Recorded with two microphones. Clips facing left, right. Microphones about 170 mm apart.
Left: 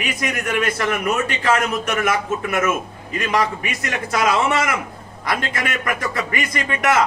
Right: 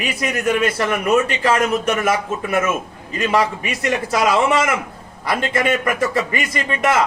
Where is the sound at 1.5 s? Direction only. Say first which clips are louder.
Even; 30° right (ahead or behind).